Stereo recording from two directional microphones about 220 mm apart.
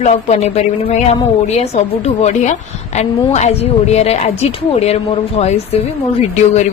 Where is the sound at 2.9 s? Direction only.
30° left (ahead or behind).